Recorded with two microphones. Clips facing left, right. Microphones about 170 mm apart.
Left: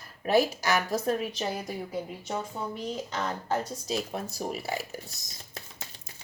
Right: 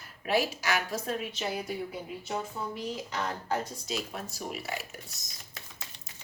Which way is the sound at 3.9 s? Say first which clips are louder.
Left 4 dB; 35° left (ahead or behind).